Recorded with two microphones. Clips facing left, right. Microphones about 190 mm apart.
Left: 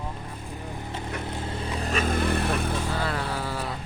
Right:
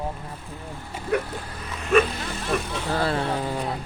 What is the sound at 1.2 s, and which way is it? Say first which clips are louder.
Vehicle: left 3 dB; 25° left (ahead or behind).